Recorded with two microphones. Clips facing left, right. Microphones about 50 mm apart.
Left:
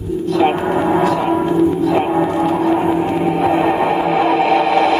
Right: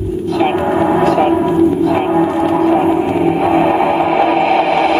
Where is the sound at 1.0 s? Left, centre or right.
Right.